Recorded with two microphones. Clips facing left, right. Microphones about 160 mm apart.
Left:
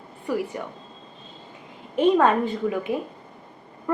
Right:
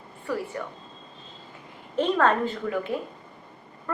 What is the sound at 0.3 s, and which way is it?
Speech, 15° left (ahead or behind).